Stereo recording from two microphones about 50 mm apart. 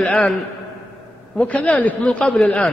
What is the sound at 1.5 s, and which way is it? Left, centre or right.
Speech, left.